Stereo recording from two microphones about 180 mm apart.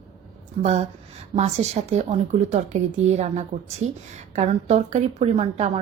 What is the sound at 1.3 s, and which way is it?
A woman's voice, 40° right (ahead or behind).